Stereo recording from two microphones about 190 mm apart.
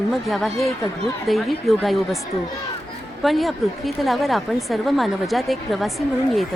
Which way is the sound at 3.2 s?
Centre (ahead or behind).